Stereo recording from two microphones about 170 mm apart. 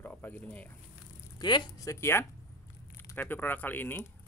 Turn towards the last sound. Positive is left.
turn(degrees=10)  # may be behind; listen again after turning